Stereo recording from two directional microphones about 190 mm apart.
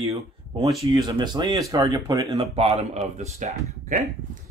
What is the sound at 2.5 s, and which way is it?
Speech, 35° right (ahead or behind).